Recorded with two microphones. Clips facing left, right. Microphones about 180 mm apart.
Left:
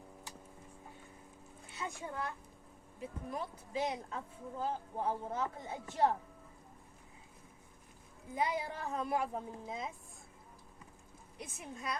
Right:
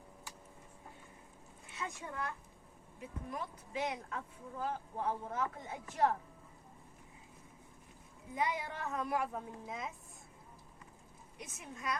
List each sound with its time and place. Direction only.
1.7 s a child's voice: 30° left (ahead or behind)
8.4 s a woman's voice: 30° left (ahead or behind)
11.3 s a woman's voice: 30° left (ahead or behind)